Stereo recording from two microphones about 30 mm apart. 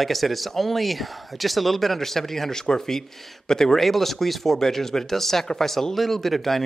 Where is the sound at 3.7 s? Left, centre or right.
Centre.